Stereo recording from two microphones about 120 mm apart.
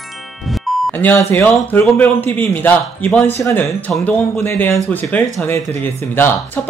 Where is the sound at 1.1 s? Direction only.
15° left (ahead or behind).